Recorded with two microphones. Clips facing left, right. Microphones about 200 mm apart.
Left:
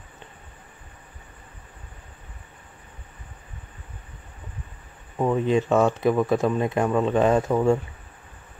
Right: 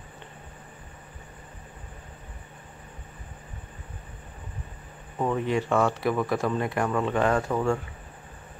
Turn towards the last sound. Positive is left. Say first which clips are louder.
# left 5 dB
turn(degrees=20)  # may be behind; listen again after turning